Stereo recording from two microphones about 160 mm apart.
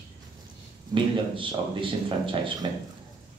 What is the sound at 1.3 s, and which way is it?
A man's voice, 30° right (ahead or behind).